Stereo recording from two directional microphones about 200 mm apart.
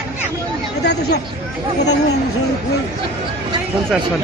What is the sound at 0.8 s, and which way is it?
Speech, 55° left (ahead or behind).